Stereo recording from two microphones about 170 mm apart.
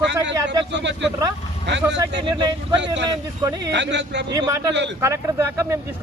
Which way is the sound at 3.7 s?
90° right.